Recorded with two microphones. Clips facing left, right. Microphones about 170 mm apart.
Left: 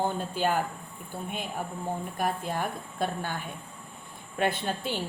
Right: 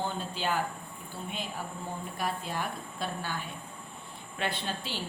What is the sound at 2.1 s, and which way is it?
A woman's voice, 50° left (ahead or behind).